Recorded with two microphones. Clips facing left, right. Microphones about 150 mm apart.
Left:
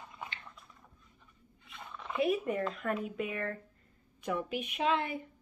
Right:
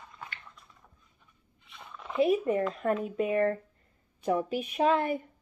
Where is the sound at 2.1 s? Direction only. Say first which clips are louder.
Right 5 dB; 30° right (ahead or behind).